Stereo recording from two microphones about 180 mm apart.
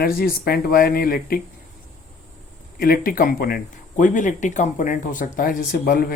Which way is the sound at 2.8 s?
50° left (ahead or behind).